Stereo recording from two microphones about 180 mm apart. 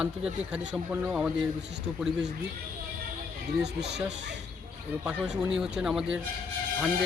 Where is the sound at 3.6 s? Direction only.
70° right (ahead or behind).